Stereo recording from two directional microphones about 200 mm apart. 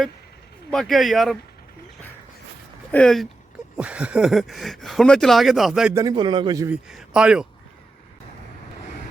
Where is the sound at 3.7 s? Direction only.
5° right (ahead or behind).